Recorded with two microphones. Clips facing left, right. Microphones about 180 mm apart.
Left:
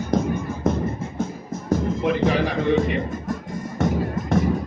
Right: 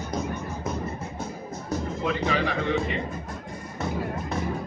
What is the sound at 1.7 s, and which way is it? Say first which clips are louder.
Music: left 7 dB; 50° left (ahead or behind).